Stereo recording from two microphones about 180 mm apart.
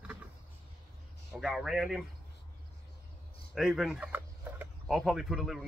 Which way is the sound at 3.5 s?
Centre (ahead or behind).